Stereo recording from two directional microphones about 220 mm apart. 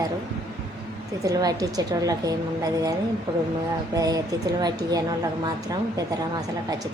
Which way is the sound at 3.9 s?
15° right (ahead or behind).